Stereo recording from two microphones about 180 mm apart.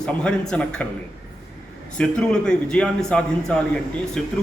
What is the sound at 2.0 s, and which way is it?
Speech, 5° left (ahead or behind).